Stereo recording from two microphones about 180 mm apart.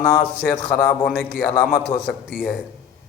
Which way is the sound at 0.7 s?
5° left (ahead or behind).